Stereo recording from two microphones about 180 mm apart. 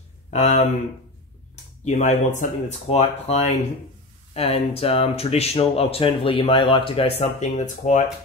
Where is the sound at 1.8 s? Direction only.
40° left (ahead or behind).